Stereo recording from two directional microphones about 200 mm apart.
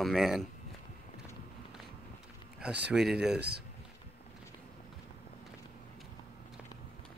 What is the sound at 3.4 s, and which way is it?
Speech, 55° right (ahead or behind).